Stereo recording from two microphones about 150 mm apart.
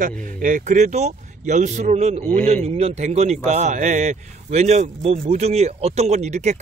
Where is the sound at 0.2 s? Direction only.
65° right (ahead or behind).